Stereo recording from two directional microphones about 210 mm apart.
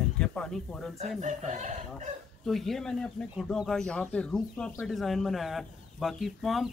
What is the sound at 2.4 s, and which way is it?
Speech, centre (ahead or behind).